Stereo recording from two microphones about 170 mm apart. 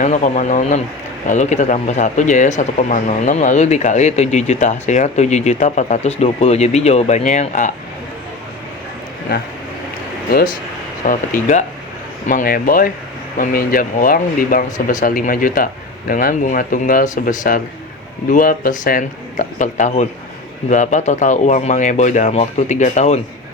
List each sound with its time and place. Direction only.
0.0 s speech: 45° left (ahead or behind)
11.0 s speech: 50° left (ahead or behind)